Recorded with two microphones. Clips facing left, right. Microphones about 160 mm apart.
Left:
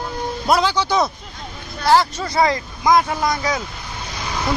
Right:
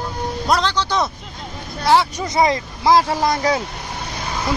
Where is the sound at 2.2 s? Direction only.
20° right (ahead or behind); by 3.6 s 35° right (ahead or behind).